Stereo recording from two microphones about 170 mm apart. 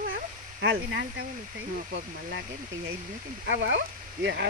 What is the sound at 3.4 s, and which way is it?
Speech, 90° right.